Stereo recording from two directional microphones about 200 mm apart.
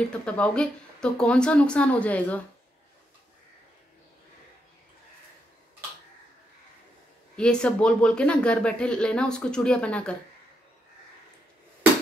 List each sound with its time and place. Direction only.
0.1 s speech: 5° left (ahead or behind)
7.3 s speech: 5° left (ahead or behind)